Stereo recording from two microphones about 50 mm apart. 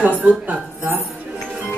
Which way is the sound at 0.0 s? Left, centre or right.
Right.